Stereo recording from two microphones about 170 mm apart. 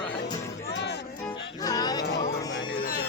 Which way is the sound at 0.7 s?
85° left.